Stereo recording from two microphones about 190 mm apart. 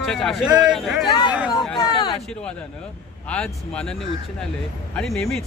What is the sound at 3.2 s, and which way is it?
Speech, 5° left (ahead or behind).